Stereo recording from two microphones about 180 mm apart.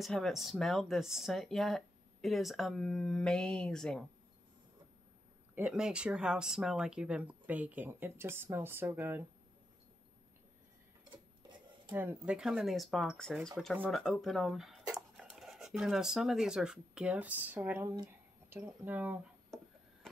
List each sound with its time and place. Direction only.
0.0 s speech: centre (ahead or behind)
5.5 s speech: 5° right (ahead or behind)
11.1 s a sound: 25° right (ahead or behind)
11.9 s speech: 10° right (ahead or behind)